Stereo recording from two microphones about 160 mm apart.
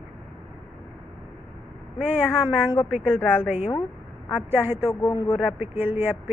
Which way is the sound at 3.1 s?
15° left (ahead or behind).